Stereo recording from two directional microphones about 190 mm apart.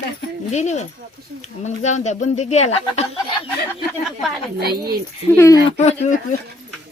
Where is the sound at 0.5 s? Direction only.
35° left (ahead or behind).